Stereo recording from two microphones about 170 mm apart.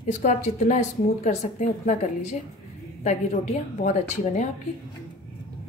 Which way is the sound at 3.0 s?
40° left (ahead or behind).